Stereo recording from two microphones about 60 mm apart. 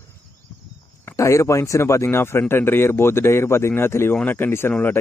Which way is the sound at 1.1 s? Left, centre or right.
Left.